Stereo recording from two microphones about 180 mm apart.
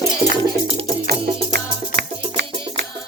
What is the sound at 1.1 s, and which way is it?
Music, 65° right (ahead or behind).